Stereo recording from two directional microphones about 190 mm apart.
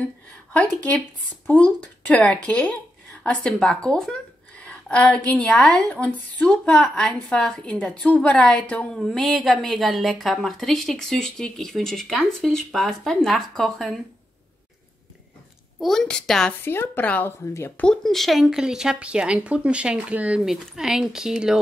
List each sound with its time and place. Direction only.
0.5 s a woman's voice: 5° left (ahead or behind)
15.8 s a woman's voice: centre (ahead or behind)